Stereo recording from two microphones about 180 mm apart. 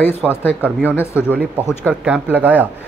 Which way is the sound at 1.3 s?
10° right (ahead or behind).